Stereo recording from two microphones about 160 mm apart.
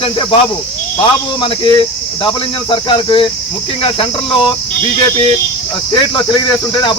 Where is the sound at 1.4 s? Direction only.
30° left (ahead or behind).